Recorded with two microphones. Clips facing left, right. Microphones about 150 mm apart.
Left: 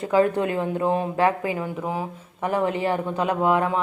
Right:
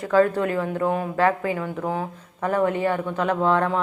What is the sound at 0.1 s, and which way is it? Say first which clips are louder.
A woman's voice: right 1 dB; 15° left (ahead or behind).